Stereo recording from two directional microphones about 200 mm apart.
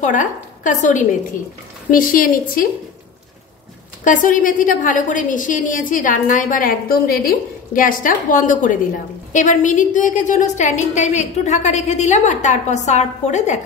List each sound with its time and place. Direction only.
0.0 s a woman's voice: 40° left (ahead or behind)
4.0 s a woman's voice: 40° left (ahead or behind)